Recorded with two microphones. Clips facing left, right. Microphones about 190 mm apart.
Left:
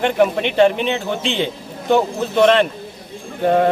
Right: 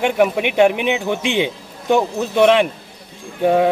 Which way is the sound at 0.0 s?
10° right (ahead or behind).